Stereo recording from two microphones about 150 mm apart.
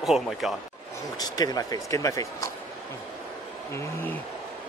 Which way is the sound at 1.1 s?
25° left (ahead or behind).